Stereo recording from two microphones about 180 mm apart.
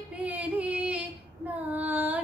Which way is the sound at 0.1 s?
10° right (ahead or behind).